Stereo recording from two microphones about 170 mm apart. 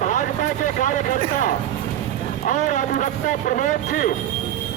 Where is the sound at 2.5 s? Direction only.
50° left (ahead or behind).